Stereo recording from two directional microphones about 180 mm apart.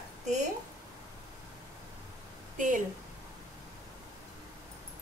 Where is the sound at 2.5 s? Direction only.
45° right (ahead or behind).